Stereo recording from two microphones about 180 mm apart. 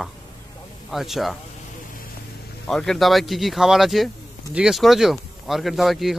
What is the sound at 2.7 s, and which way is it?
Speech, 5° left (ahead or behind).